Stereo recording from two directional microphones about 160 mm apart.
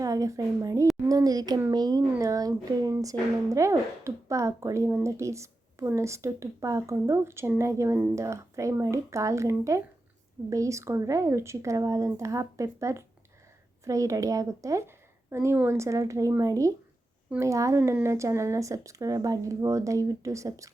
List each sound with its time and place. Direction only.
0.0 s speech: 20° right (ahead or behind)